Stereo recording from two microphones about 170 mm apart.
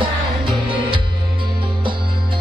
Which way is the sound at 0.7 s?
30° right (ahead or behind).